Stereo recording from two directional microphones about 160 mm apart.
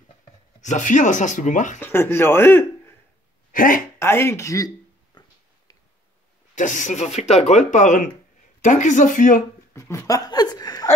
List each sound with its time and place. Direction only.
0.6 s speech: 50° left (ahead or behind)
1.8 s speech: 15° left (ahead or behind)
3.5 s speech: 60° left (ahead or behind)
4.0 s a sound: 15° left (ahead or behind)
6.5 s speech: 50° left (ahead or behind)
9.8 s speech: 20° left (ahead or behind)